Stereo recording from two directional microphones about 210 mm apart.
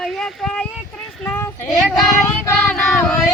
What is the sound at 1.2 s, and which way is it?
Child singing, 10° left (ahead or behind).